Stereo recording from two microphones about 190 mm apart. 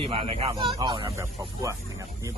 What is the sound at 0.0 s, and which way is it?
Speech, 30° right (ahead or behind).